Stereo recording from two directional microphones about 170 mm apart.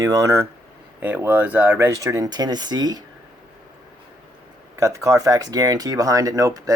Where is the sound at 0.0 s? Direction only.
20° right (ahead or behind).